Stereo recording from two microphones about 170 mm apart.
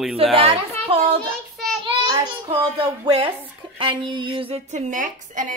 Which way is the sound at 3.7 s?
30° right (ahead or behind).